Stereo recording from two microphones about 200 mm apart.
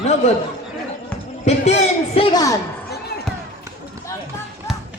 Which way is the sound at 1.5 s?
35° left (ahead or behind).